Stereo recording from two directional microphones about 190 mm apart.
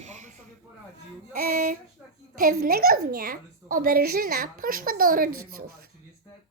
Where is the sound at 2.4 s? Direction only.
50° right (ahead or behind).